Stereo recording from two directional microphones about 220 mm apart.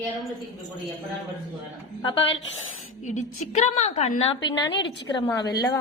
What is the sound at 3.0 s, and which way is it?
A woman's voice, 35° left (ahead or behind).